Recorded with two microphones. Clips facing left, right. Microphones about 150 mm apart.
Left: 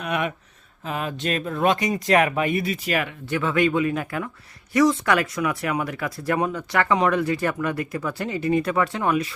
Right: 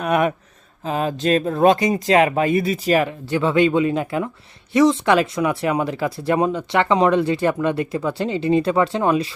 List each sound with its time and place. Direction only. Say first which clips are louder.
0.0 s speech: right 7 dB; 45° right (ahead or behind)
0.9 s speech: right 7 dB; 30° right (ahead or behind)